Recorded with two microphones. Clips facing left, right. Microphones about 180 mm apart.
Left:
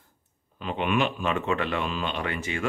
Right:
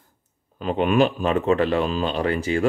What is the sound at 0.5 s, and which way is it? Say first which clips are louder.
Speech: right 7 dB; 40° right (ahead or behind).